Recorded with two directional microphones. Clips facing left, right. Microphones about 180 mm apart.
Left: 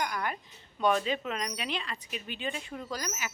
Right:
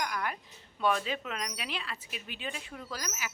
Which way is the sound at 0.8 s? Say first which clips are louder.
Left 3 dB; centre (ahead or behind).